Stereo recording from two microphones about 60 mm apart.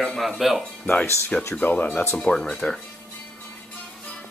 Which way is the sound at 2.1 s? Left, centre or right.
Centre.